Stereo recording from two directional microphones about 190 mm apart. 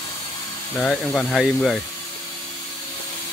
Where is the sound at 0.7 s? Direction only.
Centre (ahead or behind).